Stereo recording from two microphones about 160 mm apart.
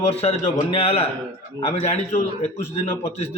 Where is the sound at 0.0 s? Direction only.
40° left (ahead or behind).